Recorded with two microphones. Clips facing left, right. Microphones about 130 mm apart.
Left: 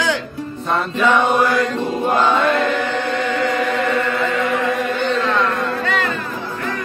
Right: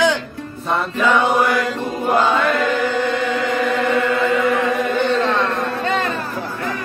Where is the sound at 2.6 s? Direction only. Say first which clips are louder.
Right 1 dB; centre (ahead or behind).